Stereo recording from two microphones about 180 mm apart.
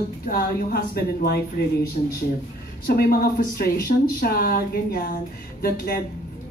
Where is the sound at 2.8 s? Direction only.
55° left (ahead or behind).